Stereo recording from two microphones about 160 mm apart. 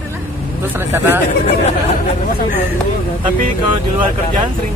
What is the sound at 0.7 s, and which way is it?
Speech, 15° right (ahead or behind).